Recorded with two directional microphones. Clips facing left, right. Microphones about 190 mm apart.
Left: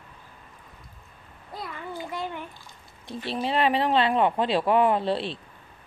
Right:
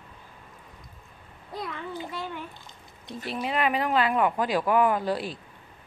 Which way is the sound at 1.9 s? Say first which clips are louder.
Left 2 dB; 15° left (ahead or behind).